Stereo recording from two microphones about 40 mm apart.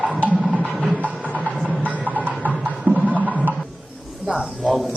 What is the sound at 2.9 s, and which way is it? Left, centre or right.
Music, right.